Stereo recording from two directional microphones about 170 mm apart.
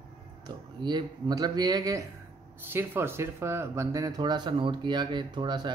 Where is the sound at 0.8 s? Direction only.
25° right (ahead or behind).